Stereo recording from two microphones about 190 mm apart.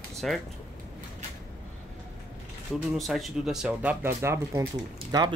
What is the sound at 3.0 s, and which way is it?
Speech, centre (ahead or behind).